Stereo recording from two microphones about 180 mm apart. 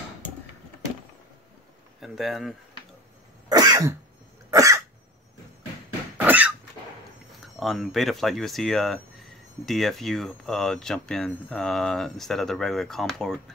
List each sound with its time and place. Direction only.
2.0 s speech: centre (ahead or behind)
3.4 s cough: 20° right (ahead or behind)
6.1 s a sound: 10° right (ahead or behind)
7.3 s speech: centre (ahead or behind)